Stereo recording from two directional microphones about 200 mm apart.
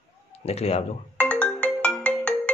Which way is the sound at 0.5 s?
30° left (ahead or behind).